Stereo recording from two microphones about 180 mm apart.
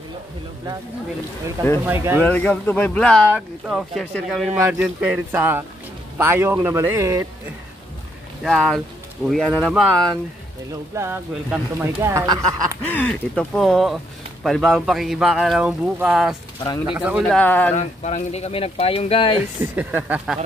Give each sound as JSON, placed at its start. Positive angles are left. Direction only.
{"t": 1.9, "sound": "speech", "side_deg": -10}
{"t": 2.2, "sound": "speech", "side_deg": 5}
{"t": 8.5, "sound": "speech", "side_deg": 0}
{"t": 11.0, "sound": "speech", "side_deg": -15}
{"t": 12.9, "sound": "speech", "side_deg": 5}
{"t": 17.4, "sound": "speech", "side_deg": 10}
{"t": 17.7, "sound": "speech", "side_deg": 40}
{"t": 19.6, "sound": "speech", "side_deg": -10}